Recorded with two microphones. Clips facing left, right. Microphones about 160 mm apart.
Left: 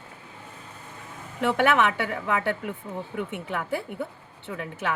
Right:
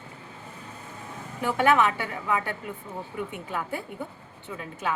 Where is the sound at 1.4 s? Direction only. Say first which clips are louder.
Even; 70° left (ahead or behind).